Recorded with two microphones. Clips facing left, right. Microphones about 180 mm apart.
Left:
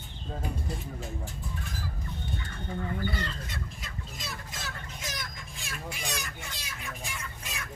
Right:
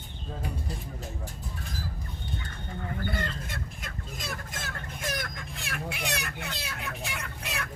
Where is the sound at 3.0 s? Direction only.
50° right (ahead or behind).